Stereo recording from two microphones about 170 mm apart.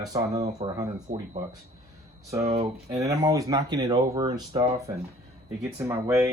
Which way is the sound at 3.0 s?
20° right (ahead or behind).